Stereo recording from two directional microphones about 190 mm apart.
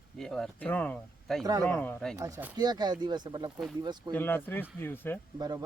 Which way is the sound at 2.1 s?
15° right (ahead or behind).